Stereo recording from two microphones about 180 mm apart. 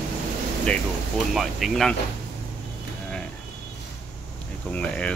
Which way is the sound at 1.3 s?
Centre (ahead or behind).